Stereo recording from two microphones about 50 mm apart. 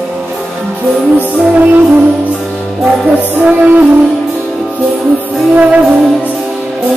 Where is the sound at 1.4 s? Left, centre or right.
Right.